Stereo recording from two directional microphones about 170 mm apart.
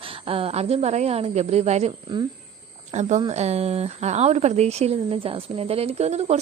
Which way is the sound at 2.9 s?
45° right (ahead or behind).